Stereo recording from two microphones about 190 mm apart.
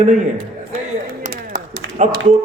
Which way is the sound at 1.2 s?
40° right (ahead or behind).